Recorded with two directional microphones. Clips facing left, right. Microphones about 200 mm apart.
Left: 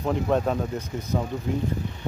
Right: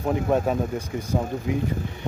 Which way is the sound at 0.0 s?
10° right (ahead or behind).